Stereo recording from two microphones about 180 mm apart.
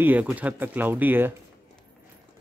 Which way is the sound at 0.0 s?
10° right (ahead or behind).